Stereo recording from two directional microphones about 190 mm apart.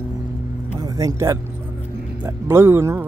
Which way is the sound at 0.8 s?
20° right (ahead or behind).